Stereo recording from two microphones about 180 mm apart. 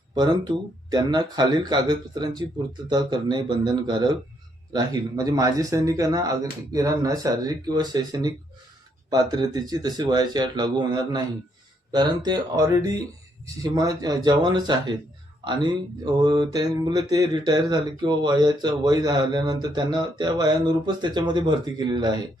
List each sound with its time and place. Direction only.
0.1 s speech: 25° right (ahead or behind)
16.1 s speech: 25° right (ahead or behind)